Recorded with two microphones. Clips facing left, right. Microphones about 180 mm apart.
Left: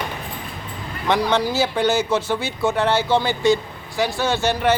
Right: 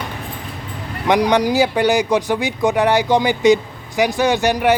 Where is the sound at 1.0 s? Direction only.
15° right (ahead or behind).